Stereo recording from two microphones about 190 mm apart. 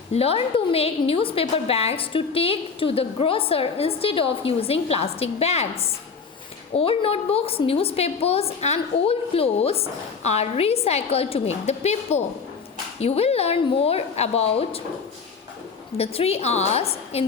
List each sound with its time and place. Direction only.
0.1 s a woman's voice: 30° left (ahead or behind)
16.0 s a woman's voice: 30° left (ahead or behind)